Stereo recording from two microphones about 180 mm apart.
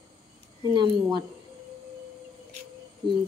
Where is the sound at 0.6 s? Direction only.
25° right (ahead or behind).